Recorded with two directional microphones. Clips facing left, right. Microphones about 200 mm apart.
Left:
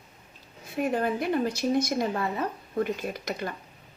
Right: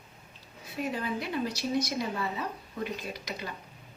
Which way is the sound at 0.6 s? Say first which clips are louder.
Left 6 dB; 50° left (ahead or behind).